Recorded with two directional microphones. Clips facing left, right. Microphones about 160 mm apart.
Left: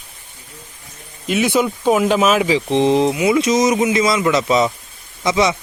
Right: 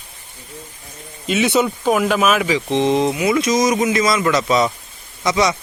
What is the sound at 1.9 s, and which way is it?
A man's voice, 20° left (ahead or behind).